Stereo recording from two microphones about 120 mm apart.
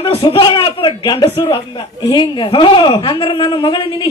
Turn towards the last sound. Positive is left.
turn(degrees=45)  # may be behind; listen again after turning